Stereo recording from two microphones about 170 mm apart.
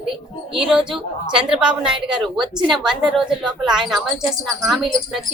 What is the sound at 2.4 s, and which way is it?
Speech, 30° right (ahead or behind).